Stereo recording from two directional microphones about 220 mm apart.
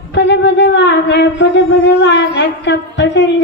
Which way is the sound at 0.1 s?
55° left (ahead or behind).